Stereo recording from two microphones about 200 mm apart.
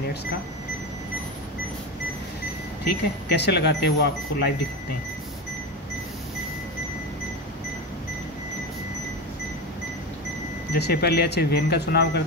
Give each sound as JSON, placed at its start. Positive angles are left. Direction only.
{"t": 2.8, "sound": "speech", "side_deg": 55}
{"t": 10.7, "sound": "speech", "side_deg": 50}